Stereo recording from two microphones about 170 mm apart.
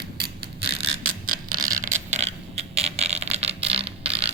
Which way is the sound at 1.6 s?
50° right (ahead or behind).